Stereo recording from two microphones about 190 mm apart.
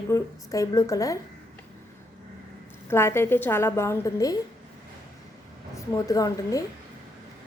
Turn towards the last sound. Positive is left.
turn(degrees=20)  # may be behind; listen again after turning